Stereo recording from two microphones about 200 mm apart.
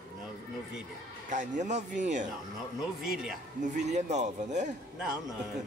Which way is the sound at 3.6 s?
35° right (ahead or behind).